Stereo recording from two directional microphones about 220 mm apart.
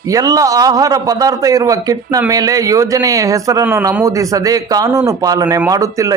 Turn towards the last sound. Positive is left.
turn(degrees=-15)  # may be behind; listen again after turning